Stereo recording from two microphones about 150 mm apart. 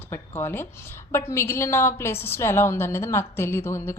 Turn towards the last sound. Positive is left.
turn(degrees=15)  # may be behind; listen again after turning